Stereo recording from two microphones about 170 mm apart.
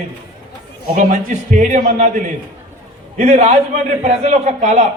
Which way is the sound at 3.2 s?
40° right (ahead or behind).